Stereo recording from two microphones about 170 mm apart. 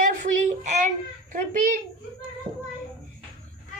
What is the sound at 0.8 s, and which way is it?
A child's voice, 50° right (ahead or behind).